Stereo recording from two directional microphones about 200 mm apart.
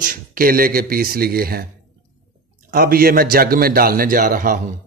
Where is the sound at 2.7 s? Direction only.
50° right (ahead or behind).